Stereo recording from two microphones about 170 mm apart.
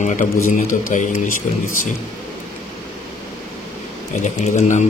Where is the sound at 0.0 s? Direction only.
45° left (ahead or behind).